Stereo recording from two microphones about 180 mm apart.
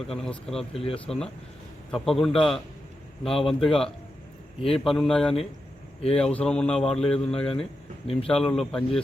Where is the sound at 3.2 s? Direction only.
30° left (ahead or behind).